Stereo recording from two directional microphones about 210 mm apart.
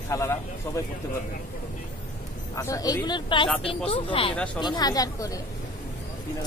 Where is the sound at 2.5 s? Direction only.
15° left (ahead or behind).